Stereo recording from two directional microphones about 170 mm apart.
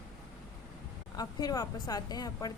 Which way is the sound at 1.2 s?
25° left (ahead or behind).